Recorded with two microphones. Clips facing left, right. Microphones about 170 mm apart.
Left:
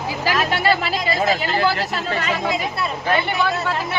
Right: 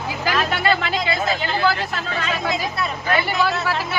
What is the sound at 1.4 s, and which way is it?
Speech, 5° left (ahead or behind).